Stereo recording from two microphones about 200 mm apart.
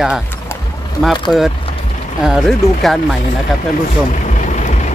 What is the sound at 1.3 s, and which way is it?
Speech, centre (ahead or behind).